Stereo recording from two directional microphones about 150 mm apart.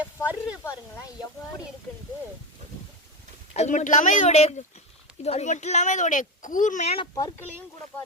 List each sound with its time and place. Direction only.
0.3 s a sound: 5° right (ahead or behind)
3.5 s speech: 50° left (ahead or behind)
7.1 s speech: 25° left (ahead or behind)